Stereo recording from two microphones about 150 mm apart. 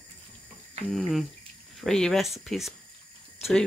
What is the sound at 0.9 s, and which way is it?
Speech, centre (ahead or behind).